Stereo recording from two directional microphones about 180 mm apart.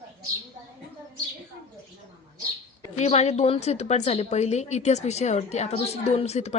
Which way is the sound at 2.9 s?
35° left (ahead or behind).